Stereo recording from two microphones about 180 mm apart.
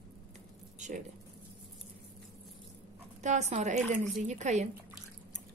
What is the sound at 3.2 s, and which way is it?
A woman's voice, 40° right (ahead or behind).